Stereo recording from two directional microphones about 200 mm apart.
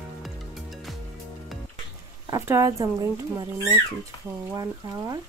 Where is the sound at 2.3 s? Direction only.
15° right (ahead or behind).